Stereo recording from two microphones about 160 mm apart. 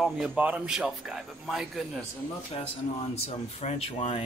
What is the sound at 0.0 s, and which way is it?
A man's voice, 5° right (ahead or behind).